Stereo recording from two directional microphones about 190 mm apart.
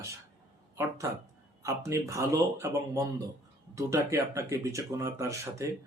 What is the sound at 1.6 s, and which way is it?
Speech, 15° right (ahead or behind).